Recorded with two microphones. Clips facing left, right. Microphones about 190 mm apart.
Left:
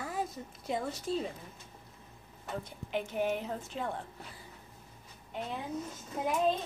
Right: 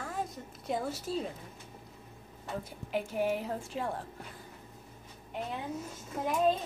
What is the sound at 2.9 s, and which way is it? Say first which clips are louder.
A woman's voice: right 1 dB; 5° right (ahead or behind).